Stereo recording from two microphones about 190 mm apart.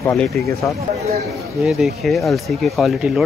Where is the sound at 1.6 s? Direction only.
Centre (ahead or behind).